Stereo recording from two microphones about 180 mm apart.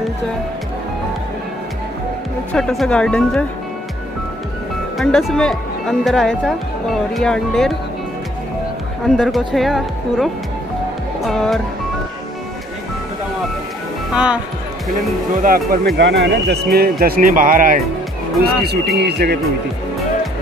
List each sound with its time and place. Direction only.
2.5 s speech: centre (ahead or behind)
4.9 s speech: centre (ahead or behind)
9.0 s speech: centre (ahead or behind)
14.1 s speech: 5° right (ahead or behind)
15.4 s speech: 55° right (ahead or behind)
16.0 s a man's voice: 75° right (ahead or behind); by 17.8 s 50° right (ahead or behind)
18.9 s a man's voice: 65° right (ahead or behind)